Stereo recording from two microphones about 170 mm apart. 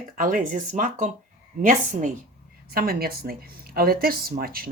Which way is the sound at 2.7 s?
60° right (ahead or behind).